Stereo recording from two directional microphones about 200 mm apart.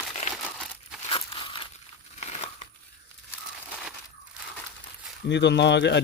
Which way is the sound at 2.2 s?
30° left (ahead or behind).